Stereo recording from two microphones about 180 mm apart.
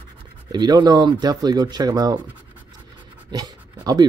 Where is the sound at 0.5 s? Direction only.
25° right (ahead or behind).